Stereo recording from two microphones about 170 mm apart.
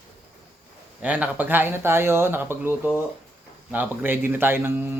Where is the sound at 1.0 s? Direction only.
10° right (ahead or behind).